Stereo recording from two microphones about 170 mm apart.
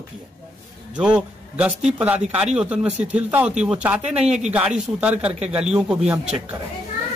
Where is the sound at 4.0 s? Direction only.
40° right (ahead or behind).